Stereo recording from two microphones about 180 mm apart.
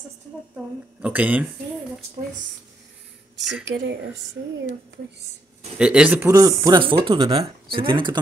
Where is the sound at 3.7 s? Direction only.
75° right (ahead or behind).